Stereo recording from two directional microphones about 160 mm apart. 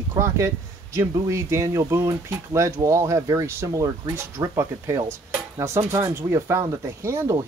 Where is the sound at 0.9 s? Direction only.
20° right (ahead or behind).